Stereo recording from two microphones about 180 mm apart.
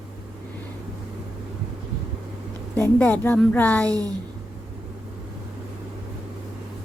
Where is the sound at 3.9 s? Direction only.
20° right (ahead or behind).